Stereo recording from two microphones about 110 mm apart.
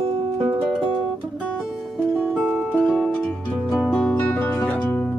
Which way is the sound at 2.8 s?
Centre (ahead or behind).